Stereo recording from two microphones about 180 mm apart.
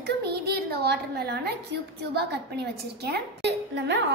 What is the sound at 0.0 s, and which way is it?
A woman's voice, 65° right (ahead or behind).